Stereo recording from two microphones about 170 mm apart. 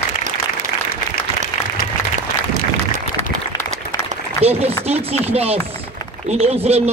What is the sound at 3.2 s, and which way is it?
Applause, 15° left (ahead or behind).